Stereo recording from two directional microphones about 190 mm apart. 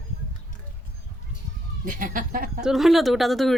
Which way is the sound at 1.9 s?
45° right (ahead or behind).